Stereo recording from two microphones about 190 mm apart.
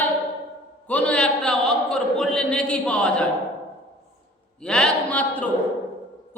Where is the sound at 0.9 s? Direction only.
5° left (ahead or behind).